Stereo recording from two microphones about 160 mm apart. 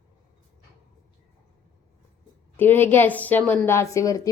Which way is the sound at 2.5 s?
15° left (ahead or behind).